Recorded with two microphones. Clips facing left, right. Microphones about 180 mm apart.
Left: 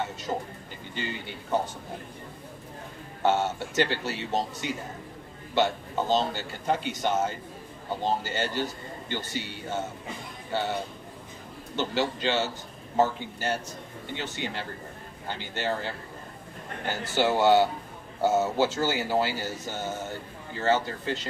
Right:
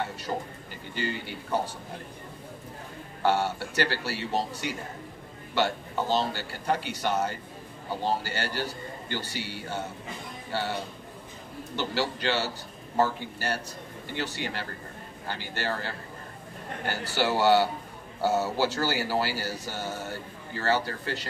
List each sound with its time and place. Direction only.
0.9 s a man's voice: 20° left (ahead or behind)
3.2 s a man's voice: 20° left (ahead or behind)
11.7 s a man's voice: 20° left (ahead or behind)